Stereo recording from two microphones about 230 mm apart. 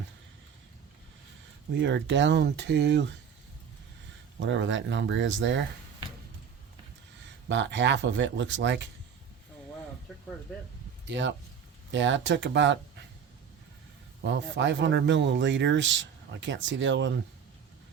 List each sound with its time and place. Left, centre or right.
1.7 s speech: right
4.4 s speech: right
7.4 s speech: right
11.0 s speech: right
14.2 s speech: right